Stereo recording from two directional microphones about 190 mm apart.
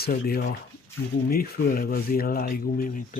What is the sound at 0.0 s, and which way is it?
Speech, 50° left (ahead or behind).